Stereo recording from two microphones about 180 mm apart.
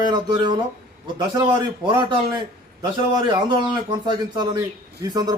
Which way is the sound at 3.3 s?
25° right (ahead or behind).